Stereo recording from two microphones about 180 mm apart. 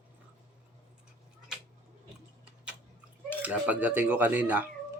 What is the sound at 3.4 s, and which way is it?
Speech, 10° right (ahead or behind).